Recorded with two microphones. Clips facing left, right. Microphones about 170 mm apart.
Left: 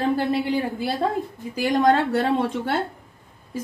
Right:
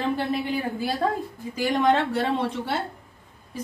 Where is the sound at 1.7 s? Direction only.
40° left (ahead or behind).